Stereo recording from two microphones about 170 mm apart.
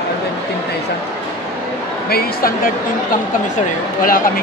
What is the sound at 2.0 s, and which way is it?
Speech, 60° left (ahead or behind).